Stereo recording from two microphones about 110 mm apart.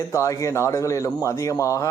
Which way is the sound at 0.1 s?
30° left (ahead or behind).